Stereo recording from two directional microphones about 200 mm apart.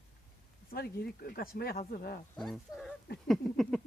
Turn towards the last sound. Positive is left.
turn(degrees=0)  # may be behind; listen again after turning